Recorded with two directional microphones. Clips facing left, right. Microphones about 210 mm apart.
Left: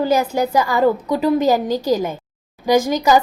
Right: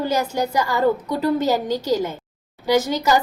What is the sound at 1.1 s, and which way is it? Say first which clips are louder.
Speech: left 3 dB; 90° left.